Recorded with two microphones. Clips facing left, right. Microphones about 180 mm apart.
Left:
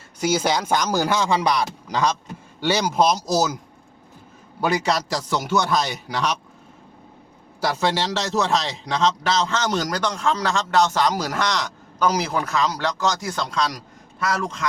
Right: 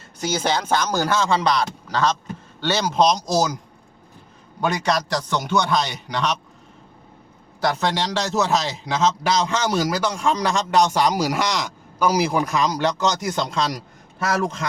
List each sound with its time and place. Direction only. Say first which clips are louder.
0.2 s speech: left 2 dB; 10° left (ahead or behind)
4.6 s a man's voice: even; 5° left (ahead or behind)
7.6 s a man's voice: even; 5° left (ahead or behind); by 13.7 s 25° right (ahead or behind)
14.4 s speech: right 1 dB; 35° right (ahead or behind)